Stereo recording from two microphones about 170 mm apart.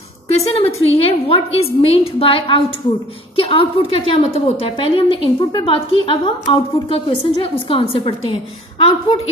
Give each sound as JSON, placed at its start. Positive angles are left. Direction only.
{"t": 0.6, "sound": "a woman's voice", "side_deg": 35}